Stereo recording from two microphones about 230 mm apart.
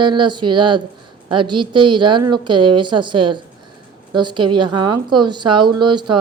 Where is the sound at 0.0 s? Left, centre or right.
Centre.